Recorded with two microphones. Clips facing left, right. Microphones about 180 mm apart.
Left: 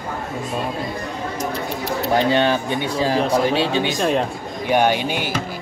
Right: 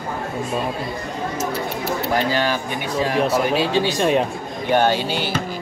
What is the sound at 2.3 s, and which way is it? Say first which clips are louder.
Speech: left 4 dB; 25° left (ahead or behind).